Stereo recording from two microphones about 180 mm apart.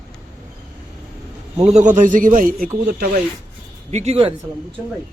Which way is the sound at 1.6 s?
40° right (ahead or behind).